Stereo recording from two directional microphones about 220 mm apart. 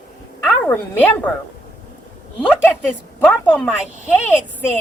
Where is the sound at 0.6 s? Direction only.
5° left (ahead or behind).